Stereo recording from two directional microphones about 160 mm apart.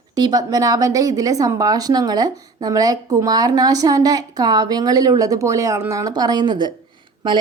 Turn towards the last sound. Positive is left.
turn(degrees=-30)  # may be behind; listen again after turning